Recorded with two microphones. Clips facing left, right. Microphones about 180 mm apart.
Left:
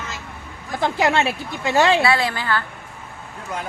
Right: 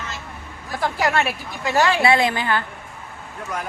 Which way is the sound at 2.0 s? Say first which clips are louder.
Right 2 dB; 20° right (ahead or behind).